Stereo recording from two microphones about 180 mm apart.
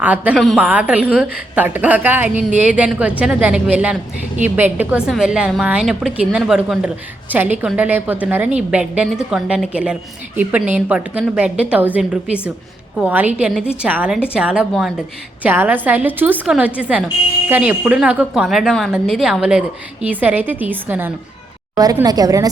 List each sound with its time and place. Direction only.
0.0 s a woman's voice: 10° right (ahead or behind)